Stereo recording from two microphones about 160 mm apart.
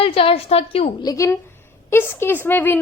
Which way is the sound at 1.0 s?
25° left (ahead or behind).